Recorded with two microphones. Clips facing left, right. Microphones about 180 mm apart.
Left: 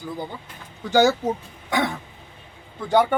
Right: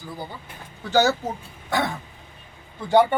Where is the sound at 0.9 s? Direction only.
15° left (ahead or behind).